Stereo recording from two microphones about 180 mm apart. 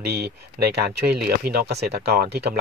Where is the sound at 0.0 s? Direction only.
65° right (ahead or behind).